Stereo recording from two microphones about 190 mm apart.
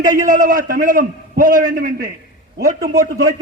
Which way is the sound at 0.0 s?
45° right (ahead or behind).